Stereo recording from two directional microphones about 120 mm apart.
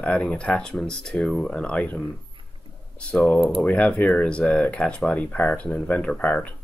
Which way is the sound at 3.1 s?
10° left (ahead or behind).